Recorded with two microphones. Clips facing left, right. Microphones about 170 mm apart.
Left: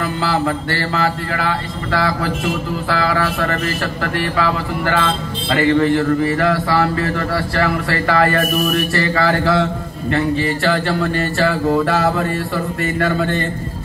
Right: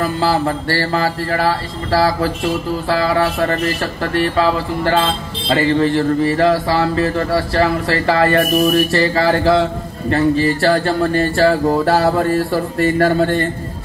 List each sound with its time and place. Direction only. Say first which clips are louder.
0.0 s a man's voice: right 2 dB; 30° right (ahead or behind)